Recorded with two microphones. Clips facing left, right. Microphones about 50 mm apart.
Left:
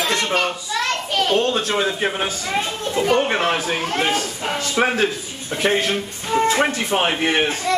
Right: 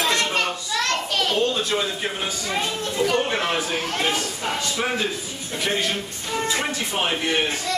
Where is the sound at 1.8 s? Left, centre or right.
Left.